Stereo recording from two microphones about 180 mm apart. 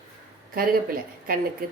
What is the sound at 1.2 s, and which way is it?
Speech, 55° right (ahead or behind).